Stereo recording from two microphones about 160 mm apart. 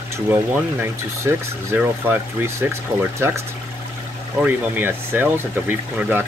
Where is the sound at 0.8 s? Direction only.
15° right (ahead or behind).